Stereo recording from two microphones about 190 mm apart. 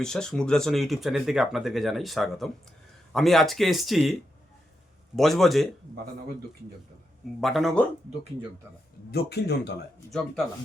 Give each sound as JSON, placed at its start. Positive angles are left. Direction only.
{"t": 0.0, "sound": "speech", "side_deg": 5}
{"t": 7.4, "sound": "speech", "side_deg": 0}
{"t": 9.1, "sound": "speech", "side_deg": 60}
{"t": 10.1, "sound": "speech", "side_deg": 0}